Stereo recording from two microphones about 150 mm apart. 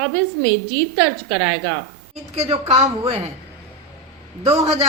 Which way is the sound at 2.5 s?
45° right (ahead or behind).